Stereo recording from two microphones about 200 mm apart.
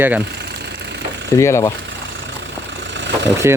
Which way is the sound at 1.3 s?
15° left (ahead or behind).